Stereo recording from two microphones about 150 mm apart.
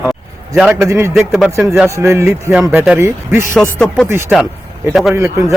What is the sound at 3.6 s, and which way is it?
Speech, 5° left (ahead or behind).